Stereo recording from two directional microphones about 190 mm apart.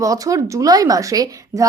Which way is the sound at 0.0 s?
15° right (ahead or behind).